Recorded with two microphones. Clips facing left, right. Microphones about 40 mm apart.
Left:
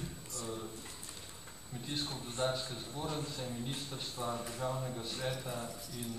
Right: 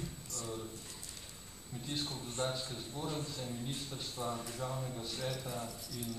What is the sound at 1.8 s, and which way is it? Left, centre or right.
Speech, centre.